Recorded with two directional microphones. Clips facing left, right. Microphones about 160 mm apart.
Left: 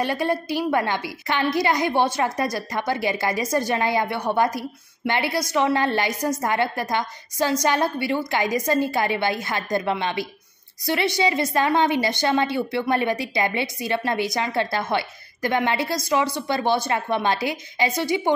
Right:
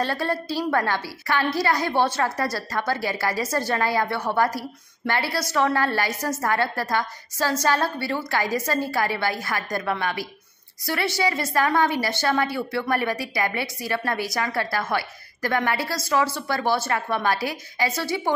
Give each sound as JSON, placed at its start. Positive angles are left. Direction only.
{"t": 0.0, "sound": "a woman's voice", "side_deg": 15}